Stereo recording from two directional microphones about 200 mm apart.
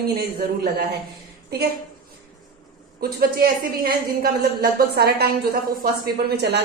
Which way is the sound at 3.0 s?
50° right (ahead or behind).